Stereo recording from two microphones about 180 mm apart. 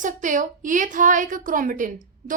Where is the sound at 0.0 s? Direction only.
45° right (ahead or behind).